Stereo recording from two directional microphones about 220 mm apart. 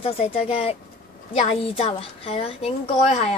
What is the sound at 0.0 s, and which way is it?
A woman's voice, 30° left (ahead or behind).